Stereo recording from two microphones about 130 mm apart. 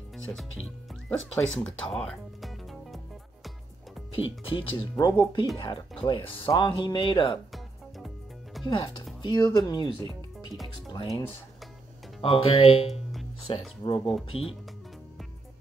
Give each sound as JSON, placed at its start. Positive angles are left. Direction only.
{"t": 0.1, "sound": "music", "side_deg": 0}
{"t": 1.0, "sound": "speech", "side_deg": 5}
{"t": 4.1, "sound": "speech", "side_deg": 45}
{"t": 8.6, "sound": "speech", "side_deg": 35}
{"t": 10.9, "sound": "speech", "side_deg": 30}
{"t": 12.2, "sound": "speech", "side_deg": 45}